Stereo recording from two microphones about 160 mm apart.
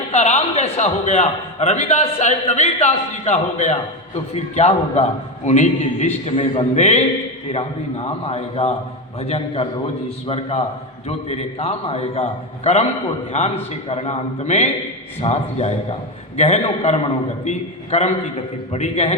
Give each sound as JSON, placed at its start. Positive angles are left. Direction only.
{"t": 0.1, "sound": "a man's voice", "side_deg": 40}